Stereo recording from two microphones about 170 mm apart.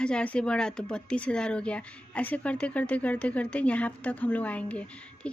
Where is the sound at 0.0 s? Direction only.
5° left (ahead or behind).